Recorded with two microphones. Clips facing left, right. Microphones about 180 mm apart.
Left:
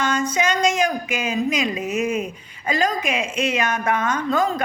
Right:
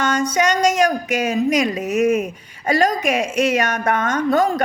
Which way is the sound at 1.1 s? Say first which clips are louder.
Right 5 dB; 45° right (ahead or behind).